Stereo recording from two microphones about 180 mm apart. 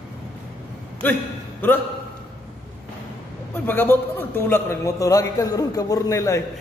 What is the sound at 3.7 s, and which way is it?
A man's voice, 10° left (ahead or behind).